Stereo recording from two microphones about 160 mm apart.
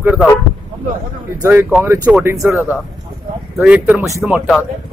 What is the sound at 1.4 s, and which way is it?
Speech, 15° right (ahead or behind).